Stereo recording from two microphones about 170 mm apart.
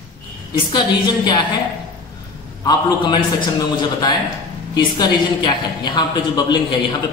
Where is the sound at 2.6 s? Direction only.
25° left (ahead or behind).